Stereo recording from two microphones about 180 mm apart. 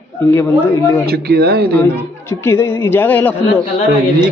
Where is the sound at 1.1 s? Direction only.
60° right (ahead or behind).